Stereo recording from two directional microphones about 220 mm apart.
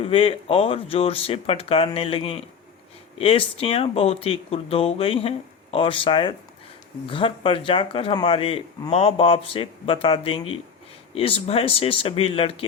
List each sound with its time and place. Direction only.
0.0 s a man's voice: 25° left (ahead or behind)